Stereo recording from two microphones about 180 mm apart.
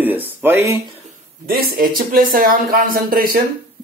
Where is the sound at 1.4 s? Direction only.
55° right (ahead or behind).